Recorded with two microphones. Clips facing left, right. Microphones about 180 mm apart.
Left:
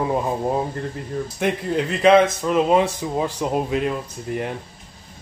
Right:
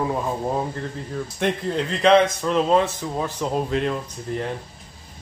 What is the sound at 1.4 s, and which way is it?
A man's voice, 5° left (ahead or behind).